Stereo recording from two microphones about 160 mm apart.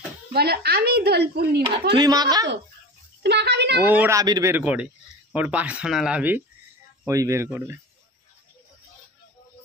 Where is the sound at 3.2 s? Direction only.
90° right.